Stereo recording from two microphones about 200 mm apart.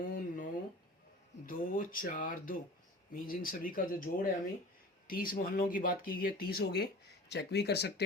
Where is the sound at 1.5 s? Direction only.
45° left (ahead or behind).